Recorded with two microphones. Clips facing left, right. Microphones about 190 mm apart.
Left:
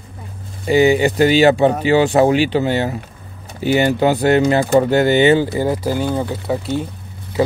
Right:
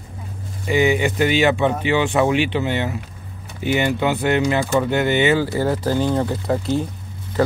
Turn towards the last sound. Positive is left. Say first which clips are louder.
# even
turn(degrees=0)  # may be behind; listen again after turning